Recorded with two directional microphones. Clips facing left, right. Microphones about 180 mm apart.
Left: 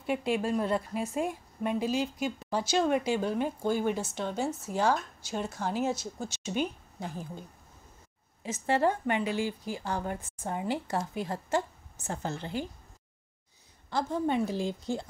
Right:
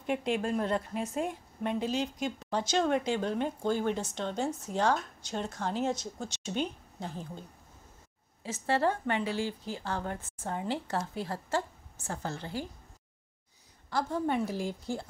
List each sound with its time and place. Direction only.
0.0 s a woman's voice: 5° left (ahead or behind)
13.8 s a woman's voice: 20° left (ahead or behind)